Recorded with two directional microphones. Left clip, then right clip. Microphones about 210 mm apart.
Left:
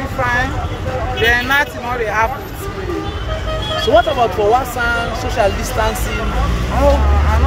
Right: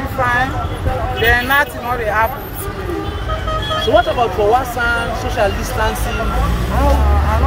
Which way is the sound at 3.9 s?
40° left (ahead or behind).